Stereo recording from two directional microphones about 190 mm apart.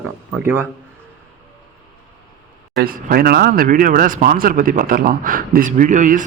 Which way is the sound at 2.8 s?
50° right (ahead or behind).